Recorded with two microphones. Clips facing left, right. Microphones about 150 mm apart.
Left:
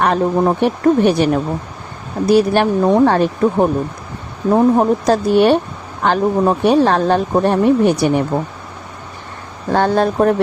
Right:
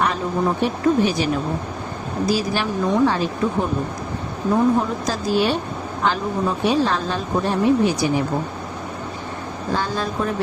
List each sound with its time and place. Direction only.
0.0 s speech: 60° left (ahead or behind)
9.7 s speech: 60° left (ahead or behind)